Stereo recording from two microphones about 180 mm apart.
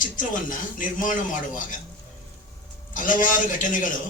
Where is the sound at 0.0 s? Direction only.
45° left (ahead or behind).